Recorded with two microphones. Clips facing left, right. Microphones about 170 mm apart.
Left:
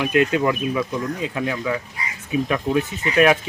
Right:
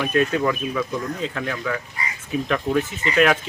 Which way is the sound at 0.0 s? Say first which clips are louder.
Left 2 dB; 15° left (ahead or behind).